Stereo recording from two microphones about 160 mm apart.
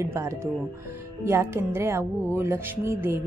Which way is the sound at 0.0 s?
15° right (ahead or behind).